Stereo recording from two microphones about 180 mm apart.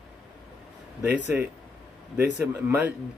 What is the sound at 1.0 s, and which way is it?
Speech, 65° right (ahead or behind).